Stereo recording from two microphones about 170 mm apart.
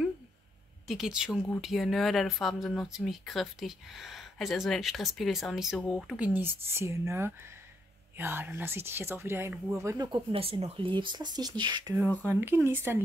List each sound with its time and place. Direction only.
0.8 s speech: centre (ahead or behind)
6.1 s speech: 10° right (ahead or behind)
10.1 s speech: 35° right (ahead or behind)
12.3 s speech: 15° right (ahead or behind)